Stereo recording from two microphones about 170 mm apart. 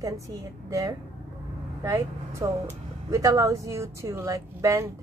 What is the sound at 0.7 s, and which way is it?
Speech, 20° right (ahead or behind).